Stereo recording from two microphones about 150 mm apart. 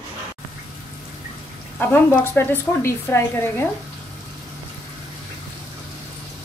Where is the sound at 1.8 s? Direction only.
10° left (ahead or behind).